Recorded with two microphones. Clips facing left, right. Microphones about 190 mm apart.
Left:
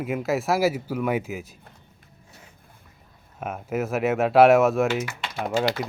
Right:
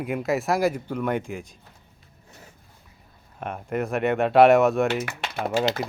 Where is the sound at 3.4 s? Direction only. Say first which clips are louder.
Even; 5° left (ahead or behind).